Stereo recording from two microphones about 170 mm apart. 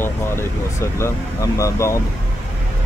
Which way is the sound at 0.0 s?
15° left (ahead or behind).